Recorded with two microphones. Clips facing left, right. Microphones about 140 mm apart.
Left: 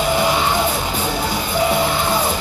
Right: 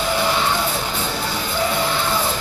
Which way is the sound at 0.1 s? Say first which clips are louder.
Left 1 dB; 15° left (ahead or behind).